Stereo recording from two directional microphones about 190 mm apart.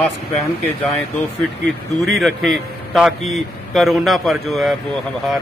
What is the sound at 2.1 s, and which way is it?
A man's voice, centre (ahead or behind).